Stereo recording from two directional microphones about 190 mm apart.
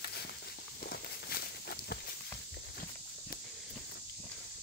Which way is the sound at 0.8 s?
55° left (ahead or behind).